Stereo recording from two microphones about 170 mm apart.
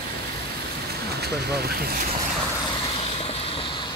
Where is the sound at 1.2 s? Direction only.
65° right (ahead or behind).